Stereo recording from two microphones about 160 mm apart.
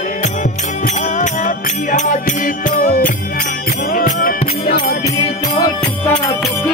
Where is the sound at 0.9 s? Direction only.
50° left (ahead or behind).